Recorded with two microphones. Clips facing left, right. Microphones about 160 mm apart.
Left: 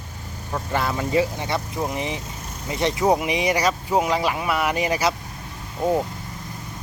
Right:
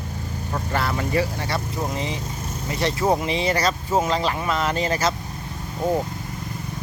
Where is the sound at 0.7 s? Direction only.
15° left (ahead or behind).